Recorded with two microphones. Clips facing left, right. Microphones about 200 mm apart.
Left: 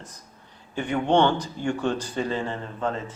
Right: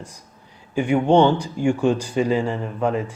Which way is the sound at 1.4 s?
10° right (ahead or behind).